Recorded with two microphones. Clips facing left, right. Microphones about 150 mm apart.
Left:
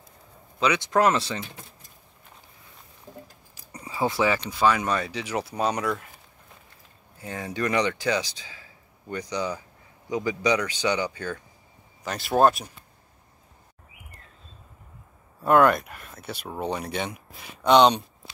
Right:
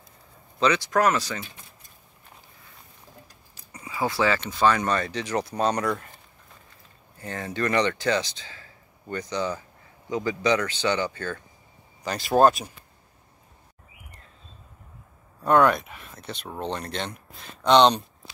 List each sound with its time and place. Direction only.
0.7 s speech: 25° left (ahead or behind)
3.1 s squish: 20° left (ahead or behind)
3.7 s a sound: 35° left (ahead or behind)
4.0 s speech: 15° left (ahead or behind)
4.5 s speech: 5° left (ahead or behind)
7.2 s speech: 10° left (ahead or behind)
15.4 s speech: centre (ahead or behind)